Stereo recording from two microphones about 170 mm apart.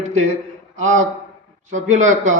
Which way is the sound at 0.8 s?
45° right (ahead or behind).